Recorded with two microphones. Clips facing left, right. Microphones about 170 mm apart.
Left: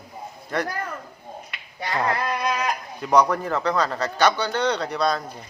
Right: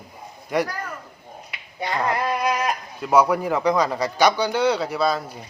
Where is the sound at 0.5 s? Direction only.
10° right (ahead or behind).